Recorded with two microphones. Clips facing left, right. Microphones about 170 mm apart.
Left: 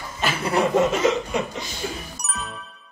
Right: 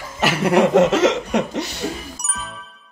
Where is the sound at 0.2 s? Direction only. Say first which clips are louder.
Right 6 dB; 90° right; by 1.9 s 70° right (ahead or behind).